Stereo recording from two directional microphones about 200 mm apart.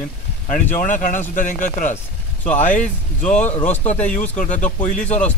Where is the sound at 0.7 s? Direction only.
40° left (ahead or behind).